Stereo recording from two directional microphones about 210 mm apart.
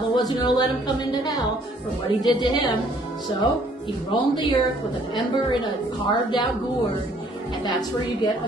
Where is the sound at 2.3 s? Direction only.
20° left (ahead or behind).